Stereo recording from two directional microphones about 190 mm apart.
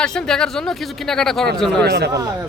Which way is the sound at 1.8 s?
60° right (ahead or behind).